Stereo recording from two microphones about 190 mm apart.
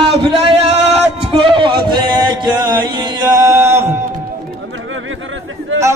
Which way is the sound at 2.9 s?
20° right (ahead or behind).